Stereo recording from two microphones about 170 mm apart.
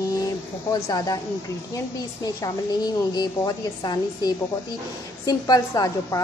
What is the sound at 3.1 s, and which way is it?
A woman's voice, 25° left (ahead or behind).